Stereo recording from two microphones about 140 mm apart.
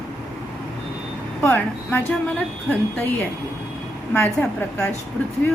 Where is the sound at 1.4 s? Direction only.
10° left (ahead or behind).